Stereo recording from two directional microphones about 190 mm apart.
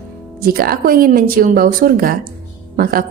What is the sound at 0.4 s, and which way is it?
A woman's voice, 50° right (ahead or behind).